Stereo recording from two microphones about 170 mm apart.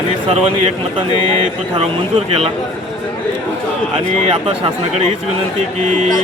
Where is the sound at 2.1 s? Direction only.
35° right (ahead or behind).